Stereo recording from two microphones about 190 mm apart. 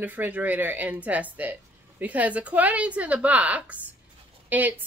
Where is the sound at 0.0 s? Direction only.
10° right (ahead or behind).